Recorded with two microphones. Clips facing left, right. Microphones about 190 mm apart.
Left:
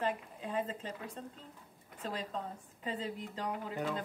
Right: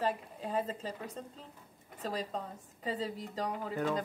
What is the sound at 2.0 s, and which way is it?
A woman's voice, 40° right (ahead or behind).